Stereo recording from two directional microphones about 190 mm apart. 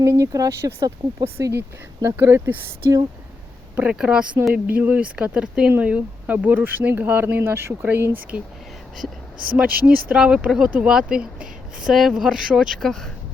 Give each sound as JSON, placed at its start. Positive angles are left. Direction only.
{"t": 0.0, "sound": "speech", "side_deg": -15}
{"t": 10.1, "sound": "speech", "side_deg": -5}